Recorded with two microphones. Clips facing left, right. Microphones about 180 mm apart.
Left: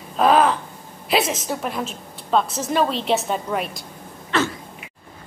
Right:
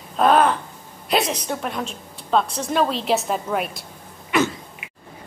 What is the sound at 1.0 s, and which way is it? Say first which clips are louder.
A woman's voice: left 1 dB; centre (ahead or behind).